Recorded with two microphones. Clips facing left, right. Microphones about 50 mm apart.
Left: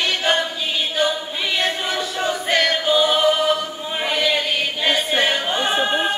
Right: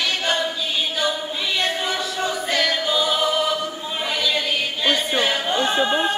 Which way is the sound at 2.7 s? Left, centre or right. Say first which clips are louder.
Left 3 dB; left.